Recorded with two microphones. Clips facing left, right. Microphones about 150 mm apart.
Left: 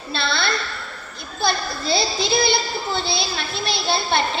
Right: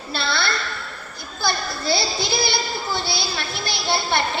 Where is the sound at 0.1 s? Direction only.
25° left (ahead or behind).